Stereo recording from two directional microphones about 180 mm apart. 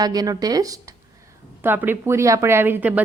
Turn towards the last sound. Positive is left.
turn(degrees=-10)  # may be behind; listen again after turning